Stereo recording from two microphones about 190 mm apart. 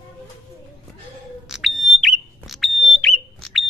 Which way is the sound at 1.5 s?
Centre (ahead or behind).